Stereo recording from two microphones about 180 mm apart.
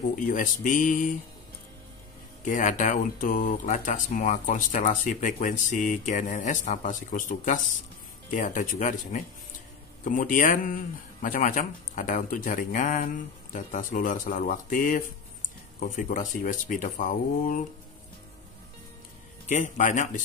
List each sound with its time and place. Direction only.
0.1 s speech: 45° left (ahead or behind)
2.4 s speech: 45° left (ahead or behind)
19.5 s speech: 45° left (ahead or behind)